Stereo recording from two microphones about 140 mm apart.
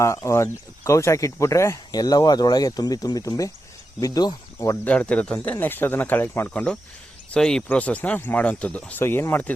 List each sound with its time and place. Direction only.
0.0 s speech: 20° left (ahead or behind)
4.9 s speech: 10° left (ahead or behind)